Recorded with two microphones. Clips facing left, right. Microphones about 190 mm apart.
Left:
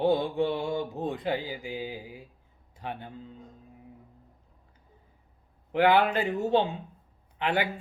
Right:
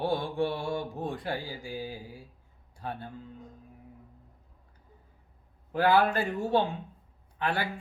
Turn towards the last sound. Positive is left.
turn(degrees=20)  # may be behind; listen again after turning